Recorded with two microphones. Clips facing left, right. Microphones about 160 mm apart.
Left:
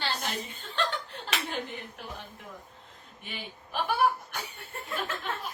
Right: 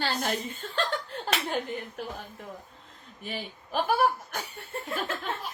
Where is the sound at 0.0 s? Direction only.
50° right (ahead or behind).